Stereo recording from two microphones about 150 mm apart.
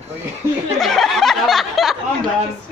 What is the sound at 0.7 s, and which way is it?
Speech, centre (ahead or behind).